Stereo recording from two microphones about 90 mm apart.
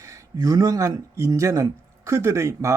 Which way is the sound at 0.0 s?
35° right (ahead or behind).